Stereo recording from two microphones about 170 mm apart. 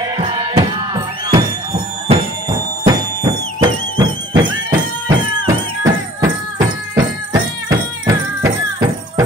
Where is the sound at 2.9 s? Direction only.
25° right (ahead or behind).